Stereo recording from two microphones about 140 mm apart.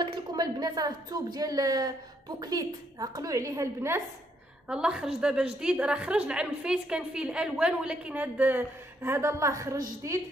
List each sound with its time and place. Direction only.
0.0 s a woman's voice: 35° right (ahead or behind)
4.6 s a woman's voice: 5° right (ahead or behind); by 10.2 s 20° right (ahead or behind)